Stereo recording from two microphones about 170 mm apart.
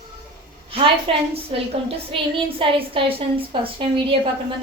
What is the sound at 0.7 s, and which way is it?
A woman's voice, 35° right (ahead or behind).